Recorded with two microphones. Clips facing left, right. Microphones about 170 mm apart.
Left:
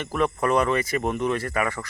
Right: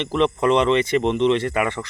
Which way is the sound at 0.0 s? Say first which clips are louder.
Right 5 dB; 20° right (ahead or behind).